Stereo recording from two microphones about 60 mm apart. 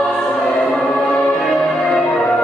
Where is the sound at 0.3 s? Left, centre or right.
Centre.